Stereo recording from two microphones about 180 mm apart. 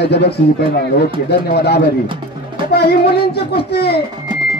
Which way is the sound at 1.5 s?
65° left (ahead or behind).